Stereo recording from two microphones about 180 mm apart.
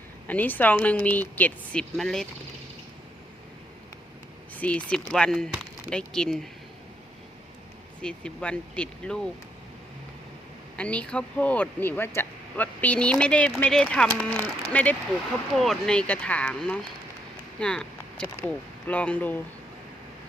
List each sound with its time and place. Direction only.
0.3 s speech: 10° left (ahead or behind)
4.5 s speech: 10° left (ahead or behind)
8.0 s speech: 5° left (ahead or behind)
10.8 s speech: 5° left (ahead or behind)